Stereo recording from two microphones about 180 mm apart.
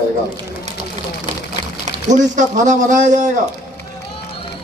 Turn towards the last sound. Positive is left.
turn(degrees=-45)  # may be behind; listen again after turning